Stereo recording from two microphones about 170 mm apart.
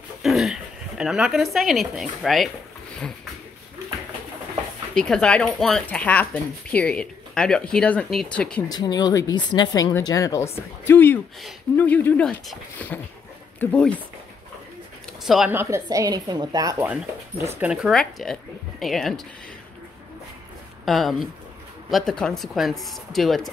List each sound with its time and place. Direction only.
0.2 s speech: centre (ahead or behind)
4.9 s speech: 5° left (ahead or behind)
8.6 s speech: 25° left (ahead or behind); by 13.9 s 5° left (ahead or behind)
15.2 s speech: centre (ahead or behind)
15.5 s a woman's voice: 15° right (ahead or behind); by 19.2 s centre (ahead or behind)
20.8 s speech: centre (ahead or behind)